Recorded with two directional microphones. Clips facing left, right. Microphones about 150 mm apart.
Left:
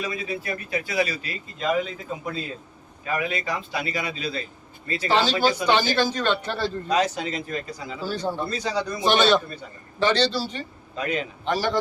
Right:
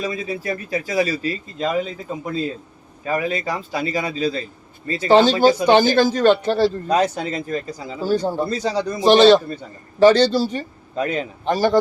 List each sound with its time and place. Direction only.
0.0 s a man's voice: 35° right (ahead or behind)
10.0 s speech: 45° right (ahead or behind)